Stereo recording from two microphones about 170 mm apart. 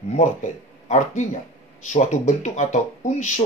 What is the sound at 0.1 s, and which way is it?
Speech, 45° left (ahead or behind).